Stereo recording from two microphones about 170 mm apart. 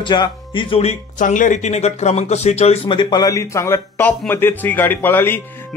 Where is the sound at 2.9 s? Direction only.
25° left (ahead or behind).